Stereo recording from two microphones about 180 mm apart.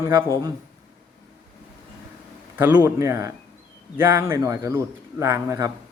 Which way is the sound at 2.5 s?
10° right (ahead or behind).